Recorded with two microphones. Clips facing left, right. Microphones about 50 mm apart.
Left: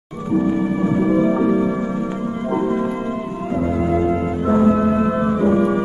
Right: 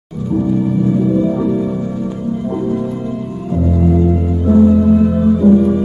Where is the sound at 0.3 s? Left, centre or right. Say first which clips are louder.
Right 2 dB; left.